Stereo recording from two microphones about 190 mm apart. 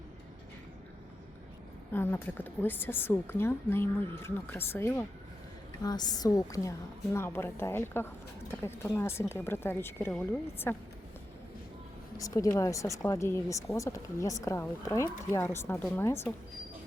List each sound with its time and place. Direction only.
1.9 s a woman's voice: 10° left (ahead or behind)
12.1 s a woman's voice: 15° left (ahead or behind)